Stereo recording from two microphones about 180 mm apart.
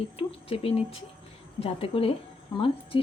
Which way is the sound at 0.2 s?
30° left (ahead or behind).